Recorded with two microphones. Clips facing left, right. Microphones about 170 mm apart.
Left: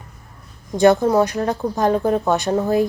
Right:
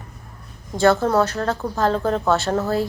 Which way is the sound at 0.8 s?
15° left (ahead or behind).